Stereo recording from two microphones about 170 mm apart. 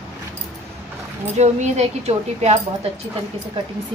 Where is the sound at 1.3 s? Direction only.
40° right (ahead or behind).